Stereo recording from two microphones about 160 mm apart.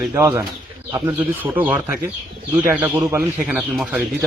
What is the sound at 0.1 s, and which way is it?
Speech, 15° right (ahead or behind).